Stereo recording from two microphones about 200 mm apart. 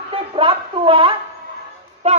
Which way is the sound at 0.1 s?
25° right (ahead or behind).